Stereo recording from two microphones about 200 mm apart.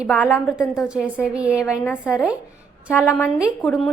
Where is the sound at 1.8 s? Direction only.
10° left (ahead or behind).